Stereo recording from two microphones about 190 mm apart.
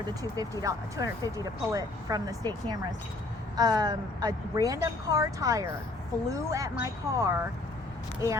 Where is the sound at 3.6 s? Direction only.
20° right (ahead or behind).